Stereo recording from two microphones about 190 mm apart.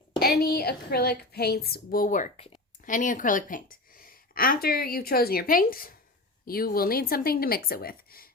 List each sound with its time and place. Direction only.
0.2 s a woman's voice: 55° left (ahead or behind)